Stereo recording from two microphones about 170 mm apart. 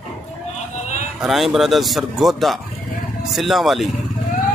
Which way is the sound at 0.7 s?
45° left (ahead or behind).